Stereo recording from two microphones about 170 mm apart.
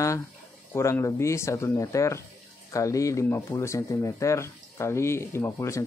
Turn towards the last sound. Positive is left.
turn(degrees=15)  # may be behind; listen again after turning